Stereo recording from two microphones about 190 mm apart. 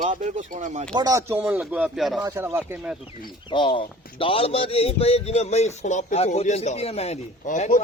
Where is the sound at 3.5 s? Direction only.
25° left (ahead or behind); by 7.8 s 40° left (ahead or behind).